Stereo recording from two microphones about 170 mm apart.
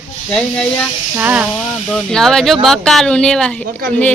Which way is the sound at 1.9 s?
Centre (ahead or behind).